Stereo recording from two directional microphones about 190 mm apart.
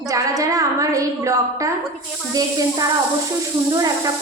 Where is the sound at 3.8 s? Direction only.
20° right (ahead or behind).